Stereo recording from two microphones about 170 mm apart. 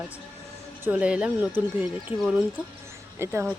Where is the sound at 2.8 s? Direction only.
15° right (ahead or behind).